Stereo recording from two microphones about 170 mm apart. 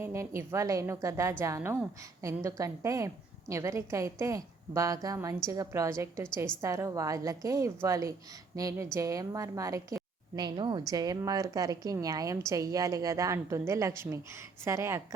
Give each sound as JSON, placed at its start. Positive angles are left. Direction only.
{"t": 0.0, "sound": "a woman's voice", "side_deg": -15}